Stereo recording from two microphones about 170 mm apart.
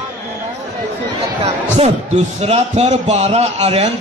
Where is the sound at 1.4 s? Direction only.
40° right (ahead or behind).